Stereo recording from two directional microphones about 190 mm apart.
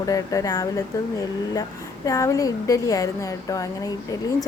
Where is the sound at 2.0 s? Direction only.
15° left (ahead or behind).